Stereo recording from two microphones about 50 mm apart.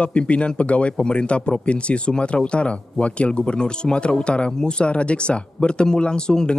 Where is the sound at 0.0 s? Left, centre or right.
Left.